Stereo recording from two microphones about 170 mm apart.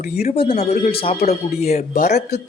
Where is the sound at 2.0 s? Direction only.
75° left (ahead or behind).